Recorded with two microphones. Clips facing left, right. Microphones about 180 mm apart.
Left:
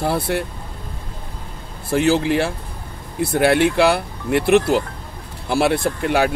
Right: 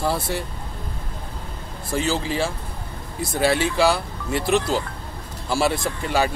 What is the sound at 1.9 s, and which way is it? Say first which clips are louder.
Speech: left 7 dB; 60° left (ahead or behind).